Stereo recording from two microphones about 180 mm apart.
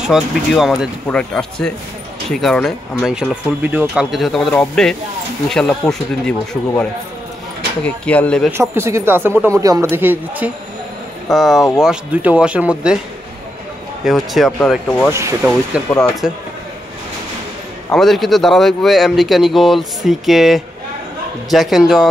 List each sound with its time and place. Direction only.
0.0 s a man's voice: centre (ahead or behind)
7.8 s speech: 5° left (ahead or behind)
8.5 s speech: 15° right (ahead or behind)
11.3 s a man's voice: centre (ahead or behind)
14.0 s a man's voice: centre (ahead or behind)
15.0 s speech: 15° right (ahead or behind)
15.9 s a man's voice: centre (ahead or behind)
17.9 s a man's voice: centre (ahead or behind)